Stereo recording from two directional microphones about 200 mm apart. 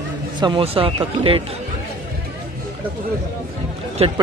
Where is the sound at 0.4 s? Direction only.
25° right (ahead or behind).